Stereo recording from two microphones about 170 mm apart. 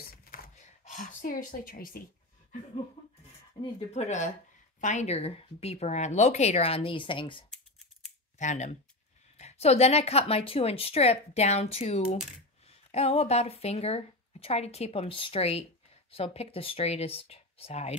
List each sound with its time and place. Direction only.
0.2 s a sound: 50° left (ahead or behind)
3.9 s a woman's voice: 45° left (ahead or behind)
8.4 s a woman's voice: 45° left (ahead or behind)